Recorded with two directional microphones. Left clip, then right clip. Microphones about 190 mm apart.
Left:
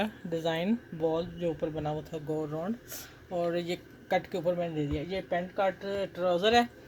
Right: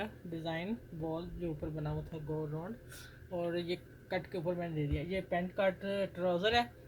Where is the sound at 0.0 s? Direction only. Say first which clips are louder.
Left 9 dB; 55° left (ahead or behind).